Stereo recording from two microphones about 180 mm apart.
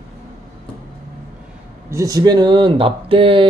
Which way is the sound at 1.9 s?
20° right (ahead or behind).